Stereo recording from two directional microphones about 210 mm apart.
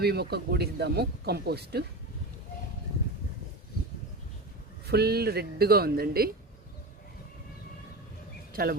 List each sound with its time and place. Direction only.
0.0 s speech: 50° right (ahead or behind)
4.9 s speech: 50° right (ahead or behind)